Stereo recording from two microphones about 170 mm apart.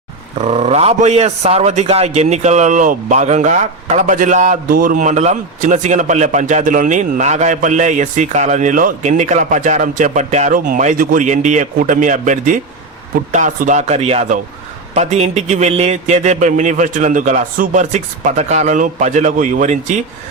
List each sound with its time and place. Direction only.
0.3 s a man's voice: 40° right (ahead or behind)